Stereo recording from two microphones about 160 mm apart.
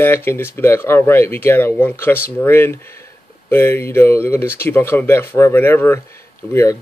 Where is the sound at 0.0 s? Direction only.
15° left (ahead or behind).